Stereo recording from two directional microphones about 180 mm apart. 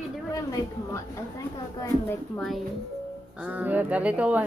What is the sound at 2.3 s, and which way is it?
Speech, centre (ahead or behind).